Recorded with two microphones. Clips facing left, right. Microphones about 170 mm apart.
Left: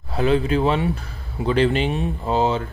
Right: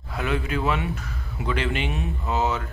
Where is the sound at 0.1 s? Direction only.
30° left (ahead or behind).